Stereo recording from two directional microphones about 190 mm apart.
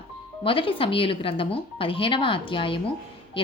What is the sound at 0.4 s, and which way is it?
Speech, 30° left (ahead or behind).